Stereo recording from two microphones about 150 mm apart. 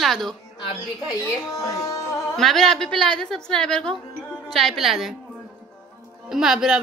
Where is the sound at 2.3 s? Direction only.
Centre (ahead or behind).